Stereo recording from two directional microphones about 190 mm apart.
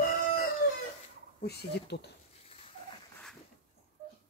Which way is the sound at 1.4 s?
60° left (ahead or behind).